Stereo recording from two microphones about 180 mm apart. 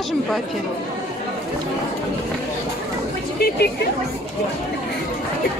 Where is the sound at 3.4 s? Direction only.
60° left (ahead or behind).